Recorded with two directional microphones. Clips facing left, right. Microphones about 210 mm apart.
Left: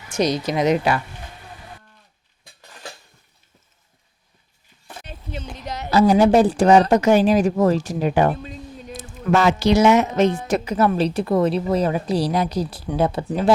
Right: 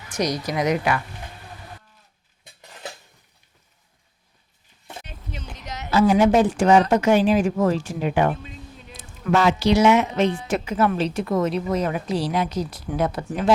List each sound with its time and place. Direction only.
0.1 s a woman's voice: 25° left (ahead or behind)
5.0 s speech: 30° left (ahead or behind)